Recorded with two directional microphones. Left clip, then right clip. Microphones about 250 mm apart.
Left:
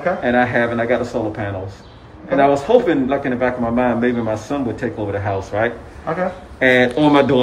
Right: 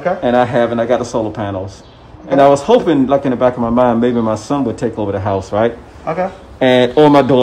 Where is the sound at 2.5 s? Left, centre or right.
Centre.